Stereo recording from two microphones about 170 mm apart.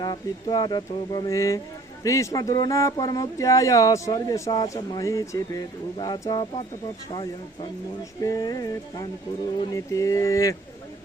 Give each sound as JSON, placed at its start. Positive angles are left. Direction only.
{"t": 0.0, "sound": "speech", "side_deg": 25}